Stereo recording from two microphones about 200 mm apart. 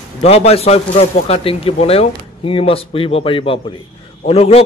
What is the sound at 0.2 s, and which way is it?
Speech, 30° left (ahead or behind).